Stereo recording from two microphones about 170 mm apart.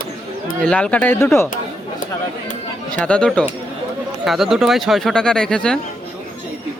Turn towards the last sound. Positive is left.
turn(degrees=5)  # may be behind; listen again after turning